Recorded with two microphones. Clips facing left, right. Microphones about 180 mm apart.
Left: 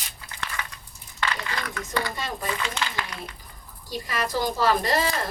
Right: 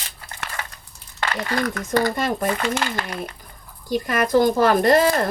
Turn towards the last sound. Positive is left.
turn(degrees=-55)  # may be behind; listen again after turning